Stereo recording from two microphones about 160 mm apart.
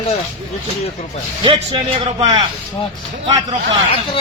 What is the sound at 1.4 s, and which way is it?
A man's voice, 30° right (ahead or behind).